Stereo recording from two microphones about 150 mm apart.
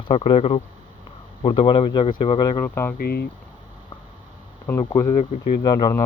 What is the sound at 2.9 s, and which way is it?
Speech, 90° left.